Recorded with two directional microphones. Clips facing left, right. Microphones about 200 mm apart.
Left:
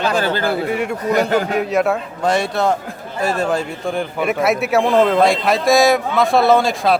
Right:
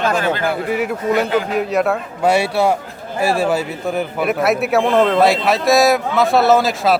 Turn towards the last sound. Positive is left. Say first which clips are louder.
# even
turn(degrees=0)  # may be behind; listen again after turning